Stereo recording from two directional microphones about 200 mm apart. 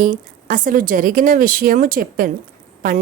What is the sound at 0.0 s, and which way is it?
A woman's voice, 40° right (ahead or behind).